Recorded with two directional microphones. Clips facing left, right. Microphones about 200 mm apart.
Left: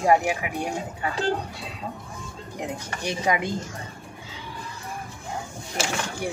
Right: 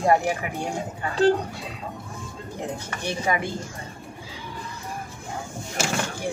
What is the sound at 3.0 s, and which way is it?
Speech, 15° left (ahead or behind).